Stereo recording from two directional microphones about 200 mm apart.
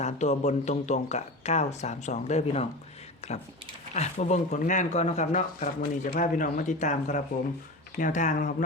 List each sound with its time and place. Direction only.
0.0 s speech: 35° left (ahead or behind)